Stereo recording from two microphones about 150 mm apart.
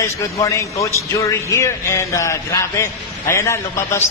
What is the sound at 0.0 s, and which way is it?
A man's voice, 20° left (ahead or behind).